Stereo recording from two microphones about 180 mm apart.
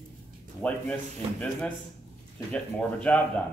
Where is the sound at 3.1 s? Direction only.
10° left (ahead or behind).